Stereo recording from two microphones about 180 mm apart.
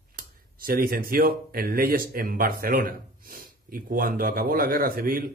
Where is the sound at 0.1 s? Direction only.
55° right (ahead or behind).